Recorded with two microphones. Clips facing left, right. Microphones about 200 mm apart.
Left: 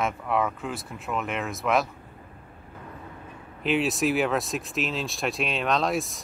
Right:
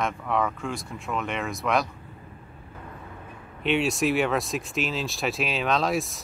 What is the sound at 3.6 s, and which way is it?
Speech, centre (ahead or behind).